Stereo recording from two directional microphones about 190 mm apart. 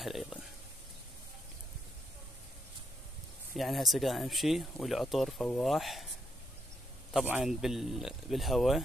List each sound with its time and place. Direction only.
0.0 s a sound: centre (ahead or behind)
3.5 s speech: centre (ahead or behind)
7.2 s speech: 5° right (ahead or behind)